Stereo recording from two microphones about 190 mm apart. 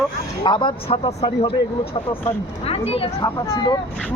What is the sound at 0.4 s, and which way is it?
Speech, 25° left (ahead or behind).